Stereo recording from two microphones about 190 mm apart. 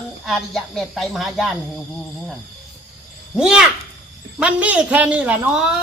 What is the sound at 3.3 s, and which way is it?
Speech, 5° right (ahead or behind).